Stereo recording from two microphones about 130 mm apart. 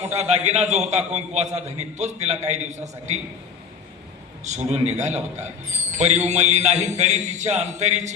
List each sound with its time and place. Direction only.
0.0 s a man's voice: 60° right (ahead or behind)
4.4 s a man's voice: 60° right (ahead or behind)